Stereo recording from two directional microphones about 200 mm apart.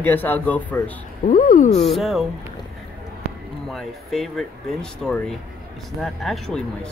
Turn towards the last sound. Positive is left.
turn(degrees=0)  # may be behind; listen again after turning